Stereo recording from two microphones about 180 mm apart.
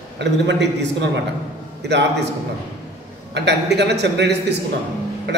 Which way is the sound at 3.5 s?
70° right (ahead or behind).